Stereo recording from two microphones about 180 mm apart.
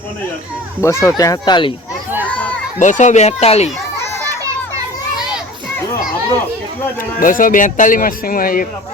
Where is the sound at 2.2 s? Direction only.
5° left (ahead or behind).